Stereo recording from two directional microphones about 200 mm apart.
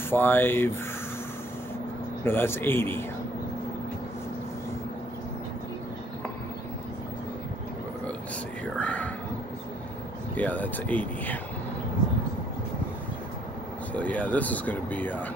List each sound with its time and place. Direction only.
0.1 s speech: 10° left (ahead or behind)
2.2 s speech: 10° left (ahead or behind)
8.7 s a sound: 5° left (ahead or behind)
10.3 s speech: 10° left (ahead or behind)
13.9 s speech: 5° left (ahead or behind)